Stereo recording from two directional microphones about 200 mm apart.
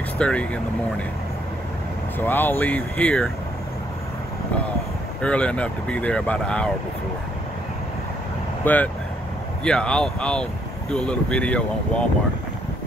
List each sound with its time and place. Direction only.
0.2 s speech: 5° left (ahead or behind)
2.1 s speech: 10° left (ahead or behind)
5.2 s speech: 5° left (ahead or behind)
8.6 s speech: 10° left (ahead or behind)